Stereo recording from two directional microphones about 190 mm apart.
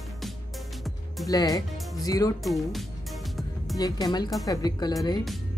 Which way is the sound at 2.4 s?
Centre (ahead or behind).